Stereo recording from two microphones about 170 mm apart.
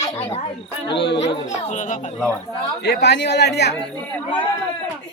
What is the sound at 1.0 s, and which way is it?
Speech, 90° left.